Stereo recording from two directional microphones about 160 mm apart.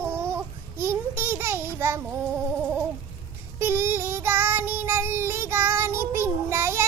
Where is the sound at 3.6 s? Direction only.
15° right (ahead or behind).